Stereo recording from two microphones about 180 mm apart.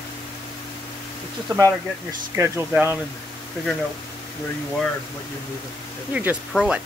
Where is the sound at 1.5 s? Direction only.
20° right (ahead or behind).